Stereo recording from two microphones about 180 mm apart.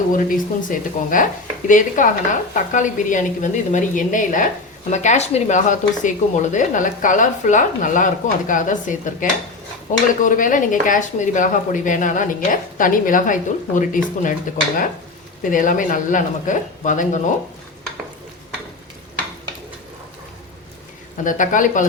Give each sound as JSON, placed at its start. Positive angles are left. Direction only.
{"t": 0.1, "sound": "speech", "side_deg": 50}
{"t": 15.4, "sound": "speech", "side_deg": 45}
{"t": 21.2, "sound": "speech", "side_deg": 45}